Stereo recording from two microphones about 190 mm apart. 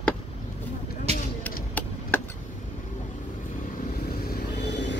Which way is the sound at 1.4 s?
10° left (ahead or behind).